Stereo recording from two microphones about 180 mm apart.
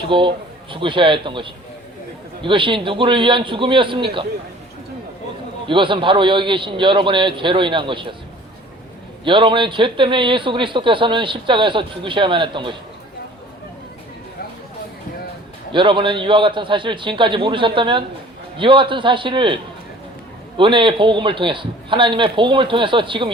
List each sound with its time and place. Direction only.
0.1 s a man's voice: 30° right (ahead or behind)
5.6 s a man's voice: 25° right (ahead or behind)
9.2 s a man's voice: 25° right (ahead or behind)
15.7 s a man's voice: 25° right (ahead or behind)
20.6 s a man's voice: 25° right (ahead or behind)